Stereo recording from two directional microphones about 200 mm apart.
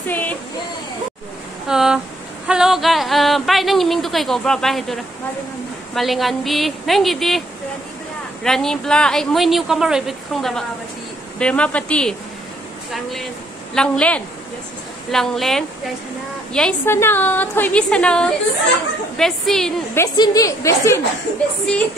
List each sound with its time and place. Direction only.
0.1 s a sound: 10° left (ahead or behind)
1.7 s speech: 5° right (ahead or behind)
8.5 s speech: centre (ahead or behind)
13.7 s a woman's voice: 5° left (ahead or behind)
20.0 s a woman's voice: 15° left (ahead or behind)